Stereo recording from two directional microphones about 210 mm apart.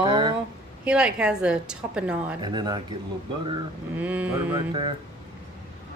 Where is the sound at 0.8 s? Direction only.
5° right (ahead or behind).